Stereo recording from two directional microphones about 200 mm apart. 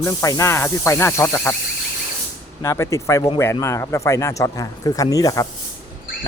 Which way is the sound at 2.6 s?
15° left (ahead or behind).